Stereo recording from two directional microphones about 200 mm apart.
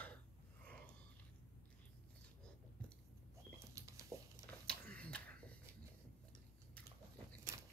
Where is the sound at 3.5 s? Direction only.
15° right (ahead or behind).